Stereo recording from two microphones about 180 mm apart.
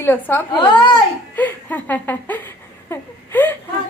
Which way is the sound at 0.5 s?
25° left (ahead or behind).